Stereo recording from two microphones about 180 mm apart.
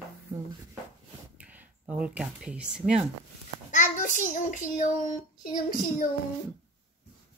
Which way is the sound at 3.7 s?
45° left (ahead or behind).